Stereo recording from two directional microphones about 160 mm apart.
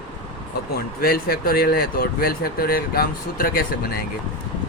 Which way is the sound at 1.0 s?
70° left (ahead or behind).